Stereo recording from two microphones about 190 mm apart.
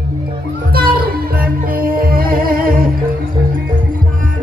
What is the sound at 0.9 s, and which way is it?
Music, 50° right (ahead or behind).